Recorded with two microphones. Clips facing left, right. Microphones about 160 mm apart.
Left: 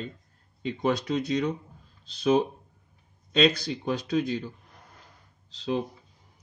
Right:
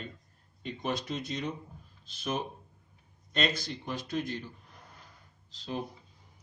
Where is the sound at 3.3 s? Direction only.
80° left.